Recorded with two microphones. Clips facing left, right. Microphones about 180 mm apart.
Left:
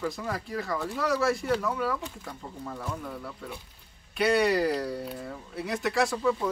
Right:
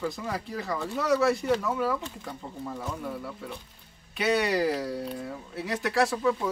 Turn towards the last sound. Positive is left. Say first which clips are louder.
# right 1 dB
turn(degrees=0)  # may be behind; listen again after turning